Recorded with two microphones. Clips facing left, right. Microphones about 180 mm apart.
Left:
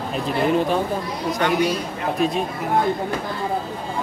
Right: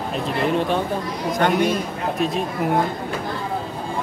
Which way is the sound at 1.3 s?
50° right (ahead or behind).